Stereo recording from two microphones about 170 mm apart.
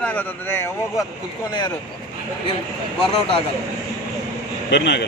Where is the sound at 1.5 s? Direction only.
25° left (ahead or behind).